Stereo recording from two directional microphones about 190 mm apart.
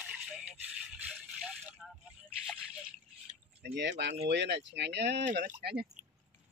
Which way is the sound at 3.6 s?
65° right (ahead or behind).